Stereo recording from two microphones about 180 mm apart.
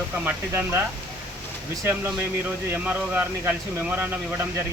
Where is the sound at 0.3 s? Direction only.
10° right (ahead or behind).